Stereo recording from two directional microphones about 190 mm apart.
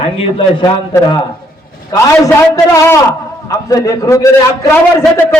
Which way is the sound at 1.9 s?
15° left (ahead or behind).